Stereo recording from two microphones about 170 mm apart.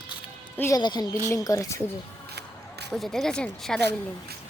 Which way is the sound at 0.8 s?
25° left (ahead or behind).